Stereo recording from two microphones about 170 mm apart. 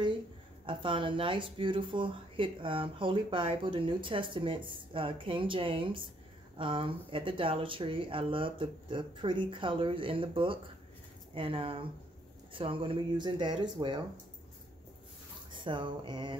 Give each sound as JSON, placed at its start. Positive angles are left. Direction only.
{"t": 0.7, "sound": "speech", "side_deg": -30}
{"t": 15.5, "sound": "speech", "side_deg": -30}